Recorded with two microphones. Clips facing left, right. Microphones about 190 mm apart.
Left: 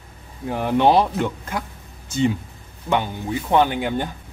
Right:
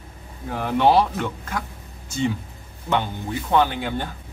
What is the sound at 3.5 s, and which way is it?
Speech, 15° left (ahead or behind).